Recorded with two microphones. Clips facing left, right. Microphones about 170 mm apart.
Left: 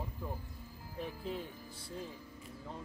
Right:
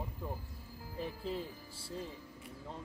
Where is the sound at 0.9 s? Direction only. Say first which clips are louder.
Right 1 dB; centre (ahead or behind).